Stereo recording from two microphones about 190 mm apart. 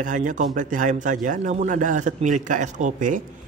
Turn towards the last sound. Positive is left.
turn(degrees=-45)  # may be behind; listen again after turning